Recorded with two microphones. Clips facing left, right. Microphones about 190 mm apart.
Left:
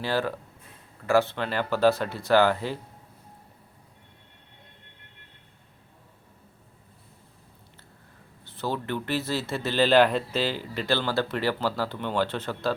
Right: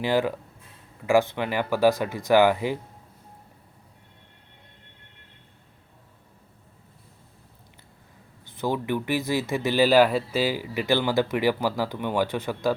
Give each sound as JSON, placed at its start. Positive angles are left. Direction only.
{"t": 0.0, "sound": "speech", "side_deg": -15}
{"t": 8.4, "sound": "speech", "side_deg": -15}